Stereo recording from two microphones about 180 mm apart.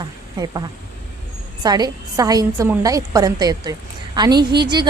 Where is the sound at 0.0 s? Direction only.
25° right (ahead or behind).